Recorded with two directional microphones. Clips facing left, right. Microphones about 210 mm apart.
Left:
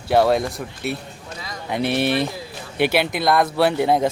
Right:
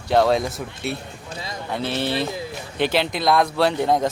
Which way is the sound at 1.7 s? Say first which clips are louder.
Left 4 dB; 15° left (ahead or behind).